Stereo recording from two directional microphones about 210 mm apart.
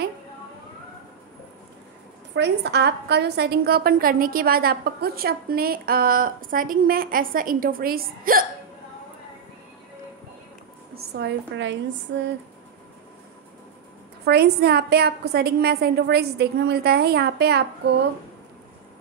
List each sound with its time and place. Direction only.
2.3 s a woman's voice: 55° right (ahead or behind)
11.0 s a woman's voice: 55° right (ahead or behind)
14.2 s a woman's voice: 50° right (ahead or behind)